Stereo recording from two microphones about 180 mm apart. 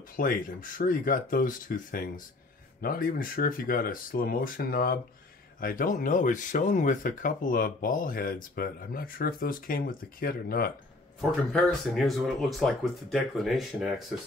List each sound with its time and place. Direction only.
0.1 s speech: 50° left (ahead or behind)
11.1 s speech: centre (ahead or behind)